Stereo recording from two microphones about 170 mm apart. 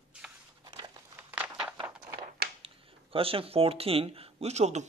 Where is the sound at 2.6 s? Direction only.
35° right (ahead or behind).